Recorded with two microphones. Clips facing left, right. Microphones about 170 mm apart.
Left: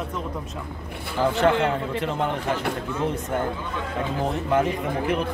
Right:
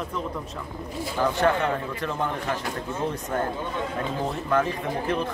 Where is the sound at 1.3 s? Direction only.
25° left (ahead or behind).